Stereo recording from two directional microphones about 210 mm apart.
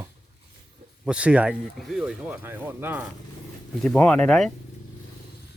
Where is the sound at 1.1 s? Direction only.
5° right (ahead or behind).